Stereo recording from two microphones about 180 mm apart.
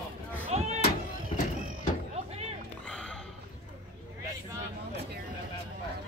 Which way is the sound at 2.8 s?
5° left (ahead or behind).